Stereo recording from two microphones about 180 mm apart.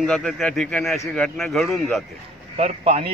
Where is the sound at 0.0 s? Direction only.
Centre (ahead or behind).